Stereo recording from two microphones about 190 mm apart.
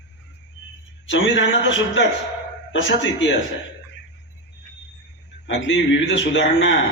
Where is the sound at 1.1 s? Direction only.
80° left.